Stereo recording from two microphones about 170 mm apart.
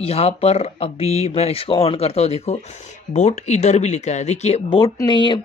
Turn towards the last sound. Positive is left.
turn(degrees=25)  # may be behind; listen again after turning